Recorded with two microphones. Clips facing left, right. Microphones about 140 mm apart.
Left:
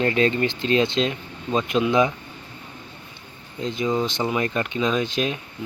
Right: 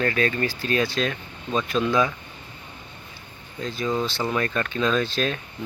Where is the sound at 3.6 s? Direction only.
20° left (ahead or behind).